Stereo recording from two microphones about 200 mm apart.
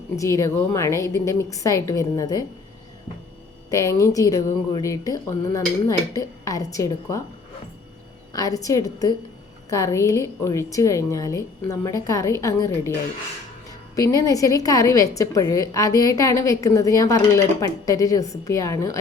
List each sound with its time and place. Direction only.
0.2 s a woman's voice: 15° left (ahead or behind)
3.7 s a woman's voice: 15° left (ahead or behind)
8.3 s a woman's voice: 15° left (ahead or behind)
13.9 s a woman's voice: 15° left (ahead or behind)